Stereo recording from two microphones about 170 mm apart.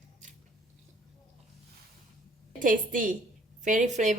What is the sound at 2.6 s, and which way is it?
A woman's voice, 50° right (ahead or behind).